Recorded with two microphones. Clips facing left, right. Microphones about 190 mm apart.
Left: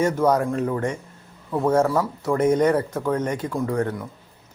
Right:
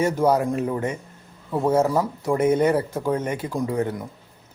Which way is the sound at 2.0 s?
20° right (ahead or behind).